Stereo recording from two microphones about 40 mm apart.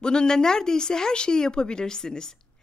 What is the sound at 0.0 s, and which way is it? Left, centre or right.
Speech, centre.